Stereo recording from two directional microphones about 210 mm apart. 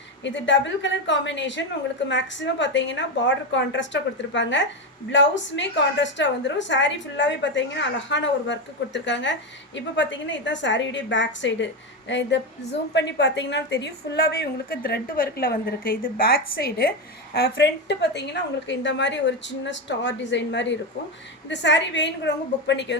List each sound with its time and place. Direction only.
0.3 s a woman's voice: 60° left (ahead or behind)